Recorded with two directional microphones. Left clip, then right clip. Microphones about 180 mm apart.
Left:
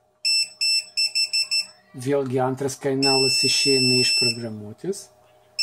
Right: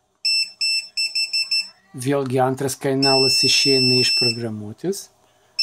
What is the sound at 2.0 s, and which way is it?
Speech, 55° right (ahead or behind).